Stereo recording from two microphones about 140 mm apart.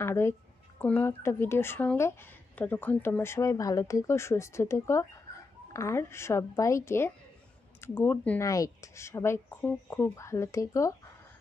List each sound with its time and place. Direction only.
0.0 s a woman's voice: 20° left (ahead or behind)